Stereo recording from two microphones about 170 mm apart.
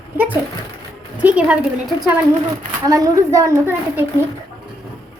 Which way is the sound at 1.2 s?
5° right (ahead or behind).